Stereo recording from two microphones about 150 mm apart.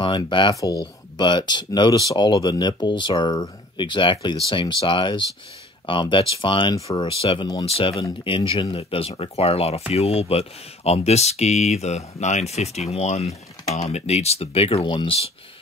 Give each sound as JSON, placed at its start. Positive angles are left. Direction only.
{"t": 0.0, "sound": "speech", "side_deg": 30}
{"t": 7.1, "sound": "speech", "side_deg": 40}